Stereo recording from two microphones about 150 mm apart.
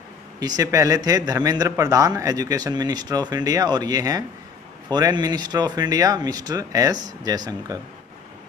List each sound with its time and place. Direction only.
0.4 s speech: 25° right (ahead or behind)